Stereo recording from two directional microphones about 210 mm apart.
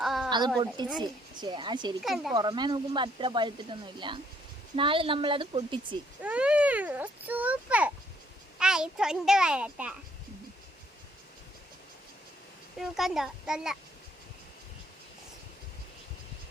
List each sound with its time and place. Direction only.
0.0 s a sound: centre (ahead or behind)
0.3 s a woman's voice: 20° right (ahead or behind)
2.0 s a child's voice: centre (ahead or behind)
2.3 s speech: 20° right (ahead or behind)
6.2 s a child's voice: 5° right (ahead or behind)
12.8 s a child's voice: centre (ahead or behind)